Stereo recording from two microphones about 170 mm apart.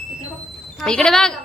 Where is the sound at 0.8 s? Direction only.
5° left (ahead or behind).